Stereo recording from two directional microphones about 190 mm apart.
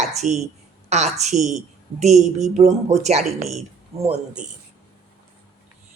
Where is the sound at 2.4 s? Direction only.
35° right (ahead or behind).